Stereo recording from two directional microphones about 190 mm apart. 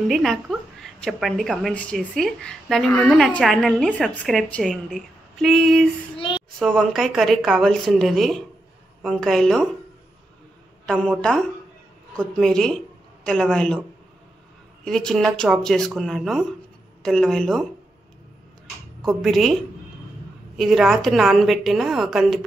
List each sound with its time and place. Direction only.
0.1 s a woman's voice: centre (ahead or behind)
6.1 s a child's voice: 30° left (ahead or behind)
6.6 s a woman's voice: centre (ahead or behind)
10.9 s a woman's voice: 5° left (ahead or behind)
14.9 s a woman's voice: 5° left (ahead or behind)
18.9 s speech: centre (ahead or behind)
20.5 s a woman's voice: centre (ahead or behind)